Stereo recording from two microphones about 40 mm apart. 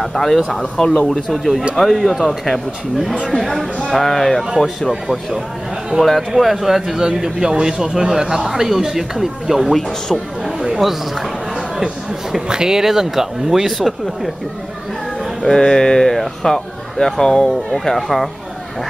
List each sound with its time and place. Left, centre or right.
0.0 s speech: centre
9.8 s speech: centre
12.4 s speech: centre
15.4 s speech: centre